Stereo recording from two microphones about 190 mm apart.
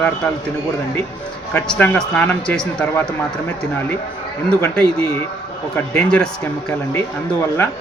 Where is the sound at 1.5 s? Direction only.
5° left (ahead or behind).